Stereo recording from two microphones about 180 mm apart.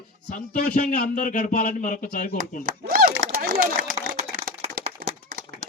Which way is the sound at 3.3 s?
55° right (ahead or behind).